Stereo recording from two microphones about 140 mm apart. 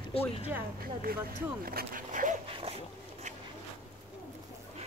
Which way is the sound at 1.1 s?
90° right.